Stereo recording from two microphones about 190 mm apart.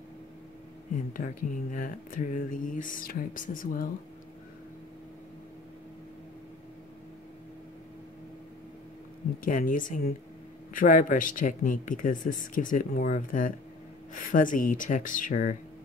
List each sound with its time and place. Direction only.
1.1 s speech: 45° left (ahead or behind)
9.4 s speech: 45° left (ahead or behind)